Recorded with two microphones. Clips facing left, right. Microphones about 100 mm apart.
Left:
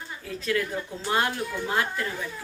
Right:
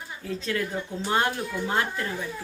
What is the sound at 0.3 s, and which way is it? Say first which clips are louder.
Speech: left 1 dB; 30° right (ahead or behind).